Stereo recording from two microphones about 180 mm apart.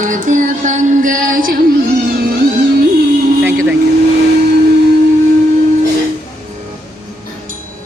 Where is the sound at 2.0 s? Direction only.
55° right (ahead or behind).